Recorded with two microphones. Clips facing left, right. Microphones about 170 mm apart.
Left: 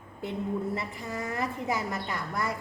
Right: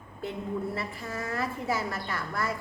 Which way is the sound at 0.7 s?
20° left (ahead or behind).